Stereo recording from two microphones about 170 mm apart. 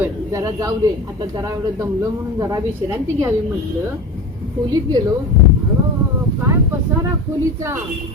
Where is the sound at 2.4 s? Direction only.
20° right (ahead or behind).